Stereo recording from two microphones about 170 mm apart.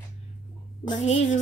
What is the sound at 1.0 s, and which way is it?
Speech, 45° left (ahead or behind).